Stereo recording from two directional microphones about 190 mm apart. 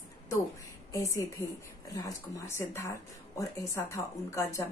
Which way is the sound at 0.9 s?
15° left (ahead or behind).